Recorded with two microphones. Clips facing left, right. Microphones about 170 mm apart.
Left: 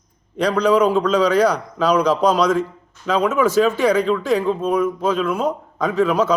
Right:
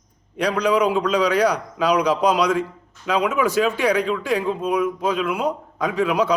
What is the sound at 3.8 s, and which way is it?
A man's voice, 15° right (ahead or behind).